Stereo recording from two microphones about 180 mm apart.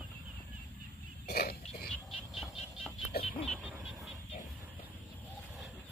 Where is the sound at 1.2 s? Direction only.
60° left (ahead or behind).